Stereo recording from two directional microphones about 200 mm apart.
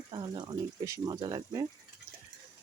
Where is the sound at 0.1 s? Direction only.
20° right (ahead or behind).